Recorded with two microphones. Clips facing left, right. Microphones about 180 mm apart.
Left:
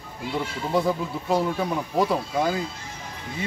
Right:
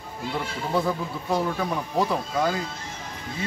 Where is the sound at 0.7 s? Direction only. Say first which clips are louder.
Left 2 dB; 15° left (ahead or behind).